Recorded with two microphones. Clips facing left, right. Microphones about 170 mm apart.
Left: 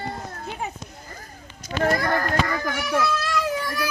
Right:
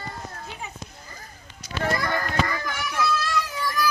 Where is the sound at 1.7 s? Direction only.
45° left (ahead or behind).